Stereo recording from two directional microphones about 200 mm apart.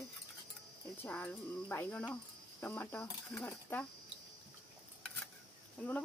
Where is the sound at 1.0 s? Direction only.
10° left (ahead or behind).